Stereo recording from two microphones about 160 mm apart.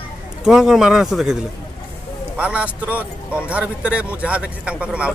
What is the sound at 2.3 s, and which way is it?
A man's voice, 10° right (ahead or behind).